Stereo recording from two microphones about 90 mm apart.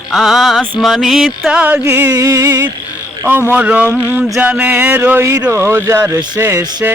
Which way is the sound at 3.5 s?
15° right (ahead or behind).